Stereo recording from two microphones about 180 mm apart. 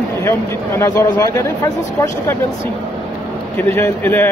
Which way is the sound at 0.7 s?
15° left (ahead or behind).